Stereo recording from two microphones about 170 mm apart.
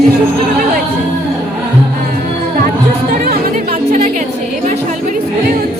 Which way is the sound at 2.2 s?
60° right (ahead or behind).